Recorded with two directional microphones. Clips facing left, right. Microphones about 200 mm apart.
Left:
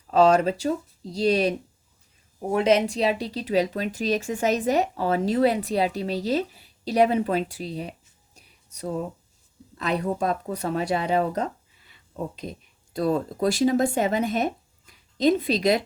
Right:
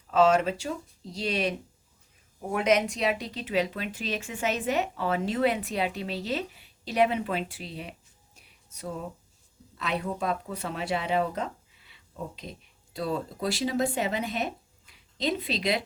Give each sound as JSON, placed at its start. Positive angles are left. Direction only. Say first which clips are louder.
{"t": 0.1, "sound": "speech", "louder": "left 4 dB", "side_deg": 35}
{"t": 8.4, "sound": "music", "louder": "left 6 dB", "side_deg": 35}
{"t": 9.7, "sound": "speech", "louder": "left 5 dB", "side_deg": 40}